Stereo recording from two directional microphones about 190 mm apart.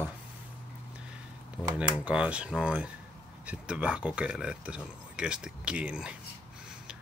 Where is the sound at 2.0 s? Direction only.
5° right (ahead or behind).